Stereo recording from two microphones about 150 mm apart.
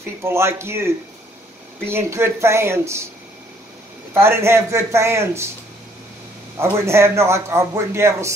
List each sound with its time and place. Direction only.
0.2 s a man's voice: 15° right (ahead or behind)
4.1 s a man's voice: 15° right (ahead or behind)
6.6 s a man's voice: 15° right (ahead or behind)